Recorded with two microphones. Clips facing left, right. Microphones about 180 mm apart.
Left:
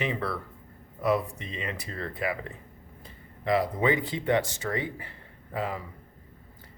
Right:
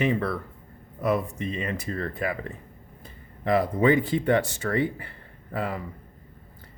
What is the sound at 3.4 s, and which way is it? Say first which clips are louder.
Speech: right 3 dB; 50° right (ahead or behind).